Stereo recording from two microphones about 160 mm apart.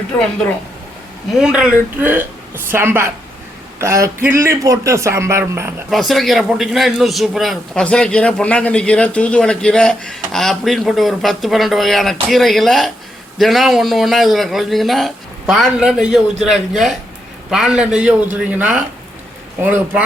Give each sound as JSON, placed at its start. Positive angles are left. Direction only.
{"t": 1.4, "sound": "a man's voice", "side_deg": -5}
{"t": 5.9, "sound": "a man's voice", "side_deg": 0}